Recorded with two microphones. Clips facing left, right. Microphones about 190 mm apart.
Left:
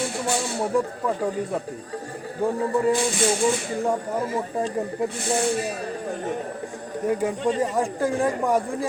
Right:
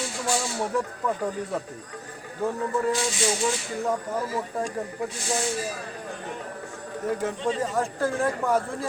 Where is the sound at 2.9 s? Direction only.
55° left (ahead or behind).